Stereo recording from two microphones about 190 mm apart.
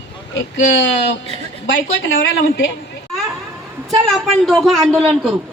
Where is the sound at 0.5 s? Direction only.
75° left (ahead or behind).